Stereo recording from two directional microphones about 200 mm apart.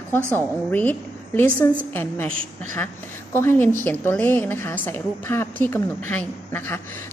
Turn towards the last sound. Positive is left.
turn(degrees=10)  # may be behind; listen again after turning